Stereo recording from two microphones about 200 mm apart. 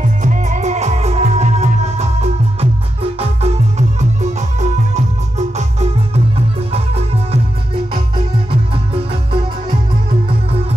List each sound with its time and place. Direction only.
0.2 s music: 35° right (ahead or behind)
3.2 s music: 30° right (ahead or behind)
8.5 s music: 25° right (ahead or behind)